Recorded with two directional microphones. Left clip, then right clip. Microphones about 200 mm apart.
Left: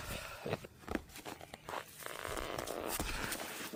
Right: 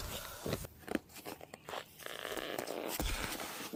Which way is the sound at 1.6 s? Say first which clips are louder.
Left 1 dB; 30° right (ahead or behind).